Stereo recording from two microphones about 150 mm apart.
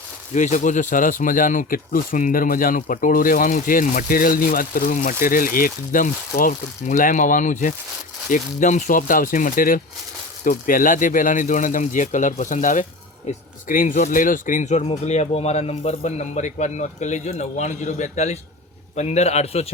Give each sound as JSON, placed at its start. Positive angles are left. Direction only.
{"t": 0.3, "sound": "speech", "side_deg": 55}